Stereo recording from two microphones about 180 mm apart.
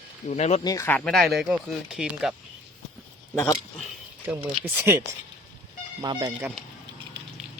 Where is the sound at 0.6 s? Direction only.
20° left (ahead or behind); by 2.3 s 5° right (ahead or behind).